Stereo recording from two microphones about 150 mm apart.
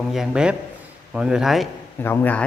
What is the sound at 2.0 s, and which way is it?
Speech, 15° left (ahead or behind).